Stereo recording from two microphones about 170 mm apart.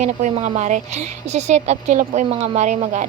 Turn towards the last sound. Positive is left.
turn(degrees=-45)  # may be behind; listen again after turning